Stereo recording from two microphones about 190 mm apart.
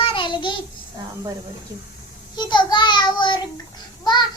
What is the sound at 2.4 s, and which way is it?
A child's voice, 25° left (ahead or behind).